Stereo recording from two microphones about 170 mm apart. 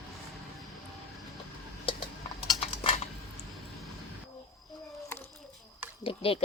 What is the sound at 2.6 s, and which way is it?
Typing, 35° left (ahead or behind).